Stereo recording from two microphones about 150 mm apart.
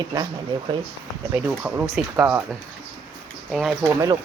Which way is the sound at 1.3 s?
5° right (ahead or behind).